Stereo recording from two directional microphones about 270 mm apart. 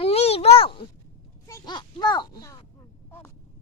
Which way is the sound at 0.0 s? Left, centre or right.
Left.